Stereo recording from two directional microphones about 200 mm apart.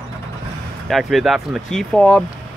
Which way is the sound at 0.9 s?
Centre (ahead or behind).